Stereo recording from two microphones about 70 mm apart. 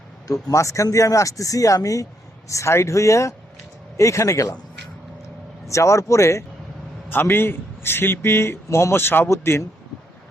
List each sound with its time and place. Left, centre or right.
0.5 s speech: left
5.6 s speech: left
7.1 s a man's voice: left